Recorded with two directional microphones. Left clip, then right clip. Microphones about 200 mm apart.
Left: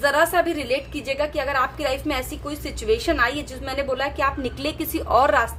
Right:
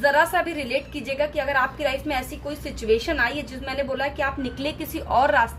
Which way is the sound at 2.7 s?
35° left (ahead or behind).